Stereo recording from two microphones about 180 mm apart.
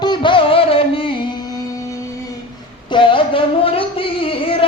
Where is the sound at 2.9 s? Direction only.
30° left (ahead or behind).